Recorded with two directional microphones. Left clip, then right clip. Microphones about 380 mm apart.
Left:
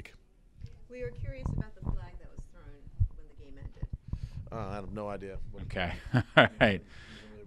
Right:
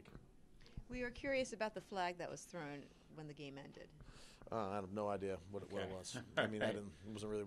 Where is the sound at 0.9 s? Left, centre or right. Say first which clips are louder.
Left 5 dB; right.